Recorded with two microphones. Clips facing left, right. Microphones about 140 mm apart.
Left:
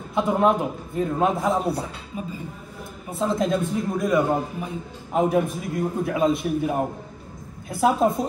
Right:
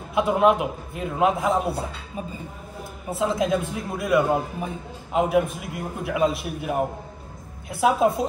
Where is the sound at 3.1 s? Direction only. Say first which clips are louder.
Even; centre (ahead or behind).